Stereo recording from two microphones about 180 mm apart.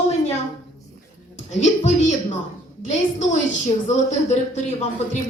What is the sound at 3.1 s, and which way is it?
A woman's voice, 40° left (ahead or behind).